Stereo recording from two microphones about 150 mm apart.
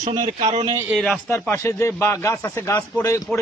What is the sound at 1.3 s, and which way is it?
A man's voice, 15° left (ahead or behind).